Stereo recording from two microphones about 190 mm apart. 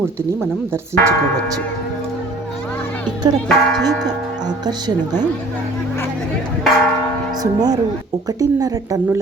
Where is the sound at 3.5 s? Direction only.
Centre (ahead or behind).